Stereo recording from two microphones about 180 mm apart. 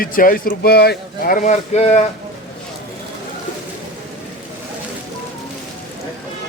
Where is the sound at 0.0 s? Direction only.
50° left (ahead or behind).